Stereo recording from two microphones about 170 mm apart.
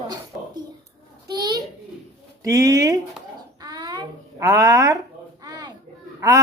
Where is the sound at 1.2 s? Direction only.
25° right (ahead or behind).